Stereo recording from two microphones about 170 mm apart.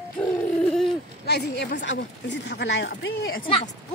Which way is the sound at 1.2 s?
75° left (ahead or behind).